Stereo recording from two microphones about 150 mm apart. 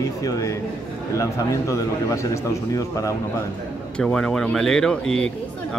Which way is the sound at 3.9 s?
5° left (ahead or behind).